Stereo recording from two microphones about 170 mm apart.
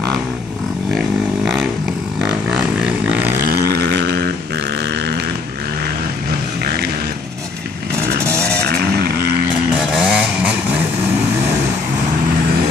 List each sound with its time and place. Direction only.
0.9 s a sound: 5° right (ahead or behind)
3.4 s vehicle: 70° right (ahead or behind)
8.6 s vehicle: 70° right (ahead or behind)
9.9 s vehicle: 5° right (ahead or behind)